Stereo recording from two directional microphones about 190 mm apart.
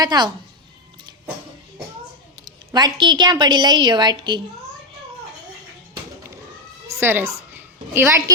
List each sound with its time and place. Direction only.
0.0 s a woman's voice: 20° right (ahead or behind)
2.4 s a woman's voice: 20° right (ahead or behind)
6.8 s a sound: 10° right (ahead or behind)